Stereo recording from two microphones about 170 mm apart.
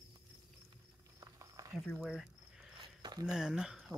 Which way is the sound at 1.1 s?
20° right (ahead or behind).